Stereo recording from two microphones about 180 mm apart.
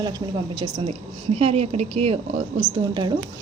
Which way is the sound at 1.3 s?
35° right (ahead or behind).